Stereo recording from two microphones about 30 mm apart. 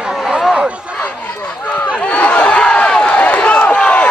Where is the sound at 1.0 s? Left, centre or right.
Left.